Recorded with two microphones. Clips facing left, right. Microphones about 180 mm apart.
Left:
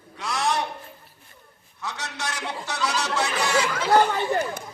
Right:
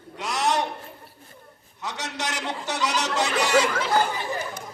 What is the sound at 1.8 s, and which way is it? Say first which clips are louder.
Speech: right 1 dB; 20° right (ahead or behind).